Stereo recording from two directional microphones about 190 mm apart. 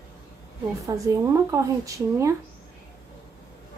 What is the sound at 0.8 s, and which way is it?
Speech, 15° right (ahead or behind).